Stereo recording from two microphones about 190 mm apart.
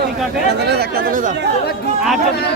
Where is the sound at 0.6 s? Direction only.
60° right (ahead or behind).